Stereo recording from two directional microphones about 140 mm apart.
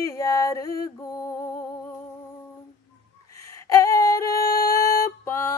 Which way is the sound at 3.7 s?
25° left (ahead or behind).